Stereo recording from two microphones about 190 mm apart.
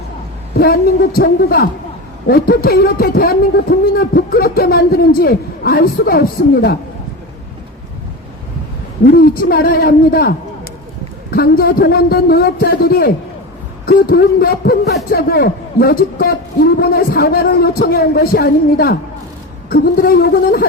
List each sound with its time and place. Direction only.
0.5 s a man's voice: 55° left (ahead or behind)
9.1 s a man's voice: 50° left (ahead or behind)